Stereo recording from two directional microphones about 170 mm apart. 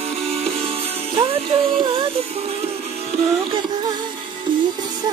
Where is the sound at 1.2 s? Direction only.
35° right (ahead or behind).